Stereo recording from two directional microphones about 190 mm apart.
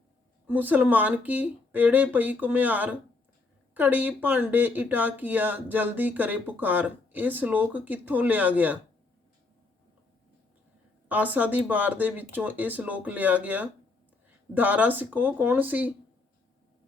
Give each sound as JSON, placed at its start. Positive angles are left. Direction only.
{"t": 0.4, "sound": "speech", "side_deg": -10}
{"t": 11.1, "sound": "speech", "side_deg": -10}